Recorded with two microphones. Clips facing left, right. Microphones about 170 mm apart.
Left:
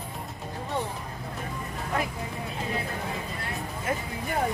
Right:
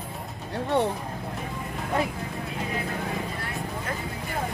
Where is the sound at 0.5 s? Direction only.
65° right (ahead or behind).